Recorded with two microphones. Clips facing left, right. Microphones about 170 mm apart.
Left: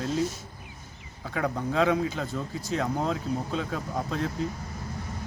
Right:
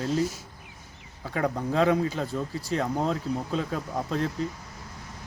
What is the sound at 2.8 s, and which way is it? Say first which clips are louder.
Speech: right 1 dB; centre (ahead or behind).